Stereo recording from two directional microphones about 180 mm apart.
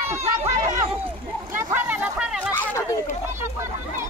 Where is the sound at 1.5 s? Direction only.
10° right (ahead or behind).